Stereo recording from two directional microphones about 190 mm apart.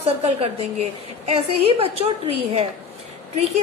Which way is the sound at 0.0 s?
30° right (ahead or behind).